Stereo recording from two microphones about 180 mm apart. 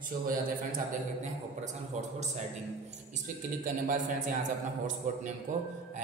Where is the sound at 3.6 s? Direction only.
45° right (ahead or behind).